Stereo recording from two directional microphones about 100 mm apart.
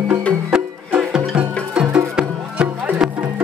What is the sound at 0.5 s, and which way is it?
Music, 5° right (ahead or behind).